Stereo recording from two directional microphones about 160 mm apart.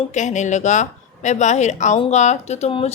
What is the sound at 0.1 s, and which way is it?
A woman's voice, 50° left (ahead or behind).